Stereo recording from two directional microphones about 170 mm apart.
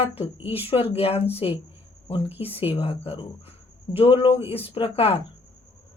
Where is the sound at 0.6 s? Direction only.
35° left (ahead or behind).